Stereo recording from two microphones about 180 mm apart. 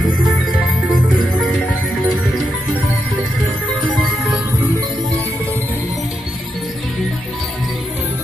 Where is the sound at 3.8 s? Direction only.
5° right (ahead or behind).